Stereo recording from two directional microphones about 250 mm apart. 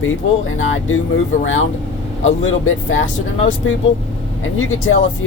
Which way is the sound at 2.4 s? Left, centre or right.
Left.